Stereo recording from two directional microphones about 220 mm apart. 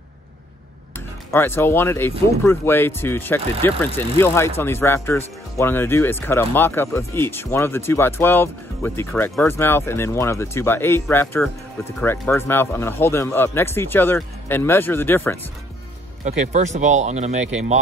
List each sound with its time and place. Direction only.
1.3 s speech: 10° left (ahead or behind)
16.3 s speech: 30° right (ahead or behind)